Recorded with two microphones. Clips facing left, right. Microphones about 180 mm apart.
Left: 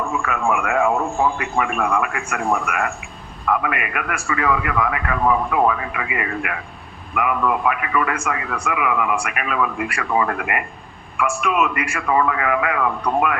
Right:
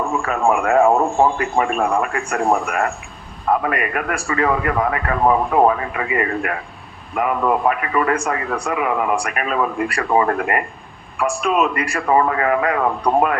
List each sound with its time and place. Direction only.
0.0 s a man's voice: 35° right (ahead or behind)